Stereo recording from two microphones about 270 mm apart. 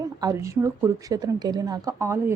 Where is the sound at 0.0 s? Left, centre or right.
Centre.